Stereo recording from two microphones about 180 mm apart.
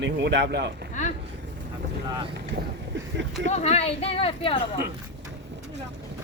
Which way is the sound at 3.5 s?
40° left (ahead or behind).